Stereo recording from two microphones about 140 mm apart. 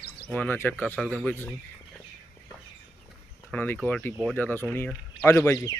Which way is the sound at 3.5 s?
10° left (ahead or behind).